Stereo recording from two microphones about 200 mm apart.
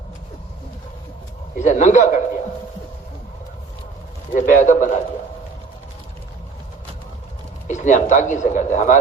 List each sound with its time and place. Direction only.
1.5 s a man's voice: 40° left (ahead or behind)
4.4 s speech: 40° left (ahead or behind)
7.7 s speech: 40° left (ahead or behind)